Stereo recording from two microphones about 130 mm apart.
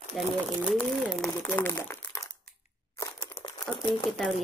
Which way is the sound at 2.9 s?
25° left (ahead or behind).